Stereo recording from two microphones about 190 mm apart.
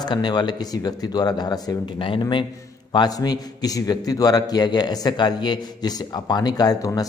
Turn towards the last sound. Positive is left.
turn(degrees=20)  # may be behind; listen again after turning